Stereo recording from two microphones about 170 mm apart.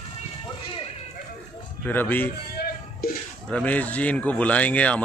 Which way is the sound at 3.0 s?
60° left (ahead or behind).